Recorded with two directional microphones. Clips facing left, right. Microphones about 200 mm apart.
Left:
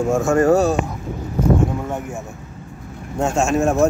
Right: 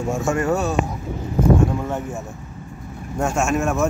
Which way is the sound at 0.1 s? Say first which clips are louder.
Left 6 dB; 45° left (ahead or behind).